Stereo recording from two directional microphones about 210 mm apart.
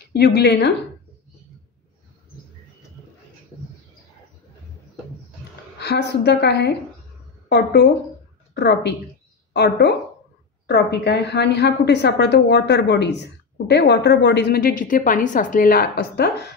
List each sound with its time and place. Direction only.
0.1 s a woman's voice: 50° left (ahead or behind)
5.8 s a woman's voice: 55° left (ahead or behind)